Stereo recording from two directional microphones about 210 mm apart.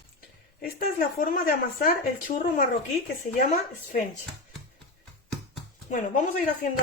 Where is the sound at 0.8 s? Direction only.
40° left (ahead or behind).